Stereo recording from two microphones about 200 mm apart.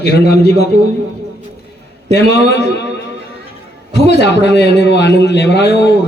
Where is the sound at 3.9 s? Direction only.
60° left (ahead or behind).